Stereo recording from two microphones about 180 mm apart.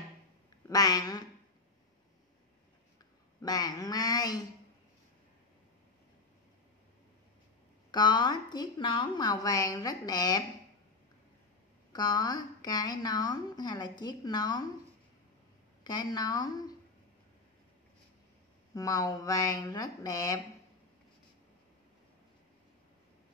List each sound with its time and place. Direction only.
0.7 s a sound: 20° left (ahead or behind)
3.3 s a woman's voice: 20° left (ahead or behind)
7.9 s a woman's voice: 25° left (ahead or behind)
11.9 s a woman's voice: 20° left (ahead or behind)
15.8 s a woman's voice: 20° left (ahead or behind)
18.8 s a woman's voice: 20° left (ahead or behind)